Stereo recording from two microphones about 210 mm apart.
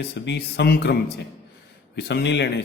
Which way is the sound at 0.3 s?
55° left (ahead or behind).